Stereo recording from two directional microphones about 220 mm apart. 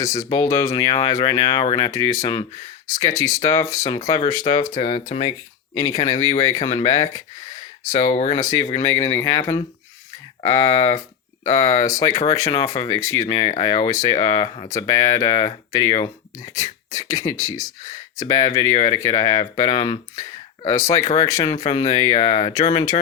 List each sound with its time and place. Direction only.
0.0 s speech: 15° left (ahead or behind)